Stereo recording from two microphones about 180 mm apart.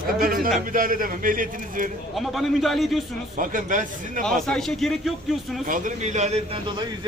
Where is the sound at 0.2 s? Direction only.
50° right (ahead or behind).